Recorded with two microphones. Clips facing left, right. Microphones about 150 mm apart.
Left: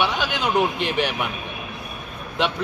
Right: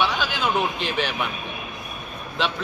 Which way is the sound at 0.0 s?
20° left (ahead or behind).